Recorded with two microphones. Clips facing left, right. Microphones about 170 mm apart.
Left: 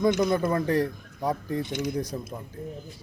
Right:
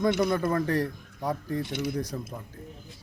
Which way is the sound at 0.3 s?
20° left (ahead or behind).